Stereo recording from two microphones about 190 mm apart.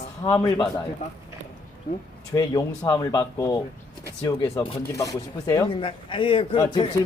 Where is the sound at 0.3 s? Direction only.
15° left (ahead or behind).